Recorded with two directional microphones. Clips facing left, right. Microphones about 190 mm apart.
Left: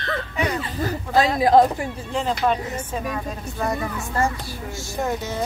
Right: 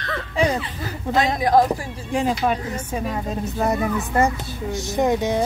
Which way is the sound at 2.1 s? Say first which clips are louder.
Right 1 dB; 10° right (ahead or behind).